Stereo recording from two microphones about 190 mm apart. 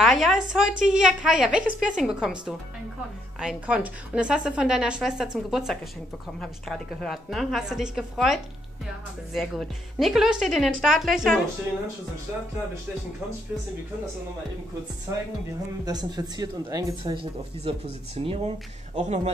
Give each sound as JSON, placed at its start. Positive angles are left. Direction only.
{"t": 0.0, "sound": "a woman's voice", "side_deg": 0}
{"t": 9.4, "sound": "a woman's voice", "side_deg": 0}
{"t": 15.8, "sound": "speech", "side_deg": -20}